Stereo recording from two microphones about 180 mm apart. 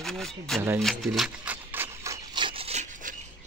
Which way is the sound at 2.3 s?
30° right (ahead or behind).